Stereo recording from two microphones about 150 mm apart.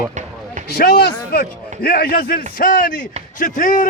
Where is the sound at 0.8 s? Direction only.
90° left.